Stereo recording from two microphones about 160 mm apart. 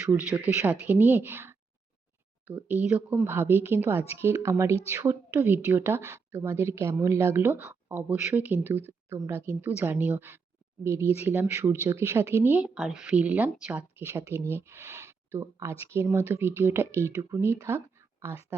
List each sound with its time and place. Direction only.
0.0 s a woman's voice: 10° right (ahead or behind)
3.2 s a woman's voice: 15° right (ahead or behind)